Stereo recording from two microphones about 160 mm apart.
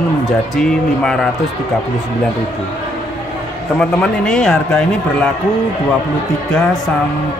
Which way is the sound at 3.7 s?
5° left (ahead or behind).